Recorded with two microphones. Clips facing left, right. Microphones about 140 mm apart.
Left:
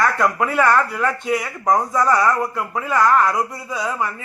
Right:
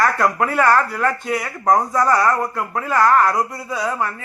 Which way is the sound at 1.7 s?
20° right (ahead or behind).